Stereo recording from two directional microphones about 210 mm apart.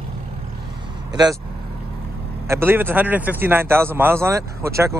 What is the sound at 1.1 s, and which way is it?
Speech, 20° right (ahead or behind).